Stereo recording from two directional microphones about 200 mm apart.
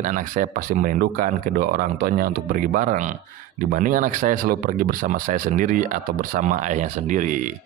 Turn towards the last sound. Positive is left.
turn(degrees=-40)  # may be behind; listen again after turning